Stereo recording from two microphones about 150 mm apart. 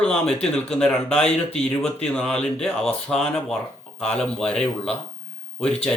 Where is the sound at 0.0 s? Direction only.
5° left (ahead or behind).